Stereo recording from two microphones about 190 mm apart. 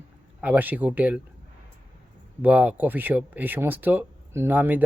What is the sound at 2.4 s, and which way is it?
A man's voice, 10° right (ahead or behind).